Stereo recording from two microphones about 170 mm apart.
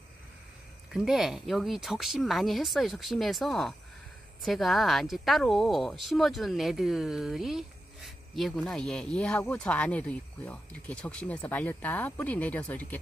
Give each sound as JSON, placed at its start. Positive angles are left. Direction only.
{"t": 0.9, "sound": "a woman's voice", "side_deg": 0}